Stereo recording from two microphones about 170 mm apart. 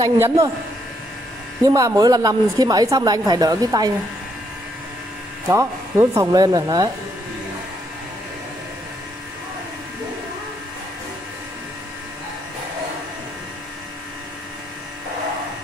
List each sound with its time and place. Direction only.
0.0 s a woman's voice: 20° right (ahead or behind)
1.7 s a woman's voice: 20° right (ahead or behind)
5.5 s a woman's voice: 15° right (ahead or behind)